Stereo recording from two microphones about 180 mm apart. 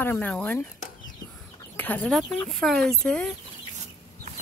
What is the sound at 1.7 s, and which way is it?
Speech, 10° left (ahead or behind).